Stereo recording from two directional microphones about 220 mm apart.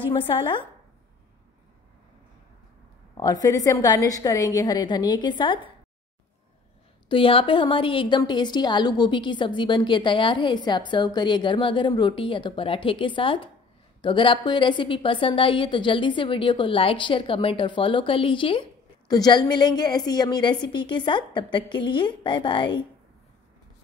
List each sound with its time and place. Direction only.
3.2 s a woman's voice: 15° left (ahead or behind)
7.1 s a woman's voice: 25° left (ahead or behind)